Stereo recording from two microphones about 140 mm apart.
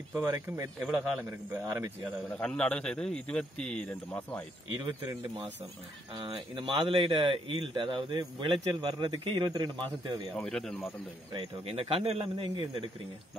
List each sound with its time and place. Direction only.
0.1 s a man's voice: 20° right (ahead or behind)
2.2 s a man's voice: 5° left (ahead or behind)
4.7 s speech: 25° right (ahead or behind)
10.3 s speech: 5° left (ahead or behind)
11.6 s speech: 40° right (ahead or behind)
12.4 s speech: 25° right (ahead or behind)